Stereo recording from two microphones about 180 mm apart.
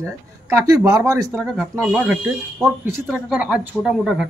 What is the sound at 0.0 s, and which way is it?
A man's voice, 15° right (ahead or behind).